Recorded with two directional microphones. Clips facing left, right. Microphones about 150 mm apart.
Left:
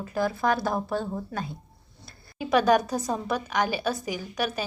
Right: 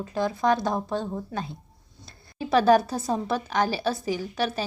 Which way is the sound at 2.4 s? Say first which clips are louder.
Right 2 dB; 35° right (ahead or behind).